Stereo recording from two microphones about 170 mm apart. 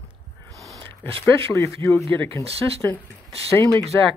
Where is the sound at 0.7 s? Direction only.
10° left (ahead or behind).